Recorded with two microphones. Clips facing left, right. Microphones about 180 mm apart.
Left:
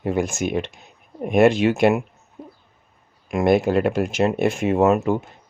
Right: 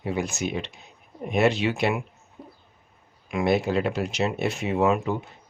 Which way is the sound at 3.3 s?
45° left (ahead or behind).